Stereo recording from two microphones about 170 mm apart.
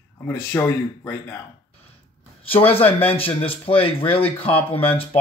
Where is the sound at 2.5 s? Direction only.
35° left (ahead or behind).